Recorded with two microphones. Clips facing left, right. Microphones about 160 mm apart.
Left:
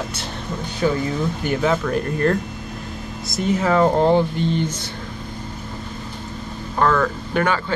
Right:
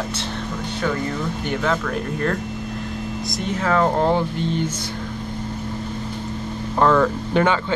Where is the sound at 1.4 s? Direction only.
5° left (ahead or behind).